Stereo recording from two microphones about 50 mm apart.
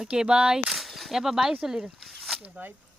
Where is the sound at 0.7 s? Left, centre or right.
Centre.